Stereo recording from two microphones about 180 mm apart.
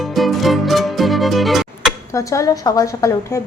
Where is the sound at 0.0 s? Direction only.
Centre (ahead or behind).